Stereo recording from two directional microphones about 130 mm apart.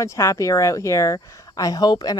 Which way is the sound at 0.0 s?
25° left (ahead or behind).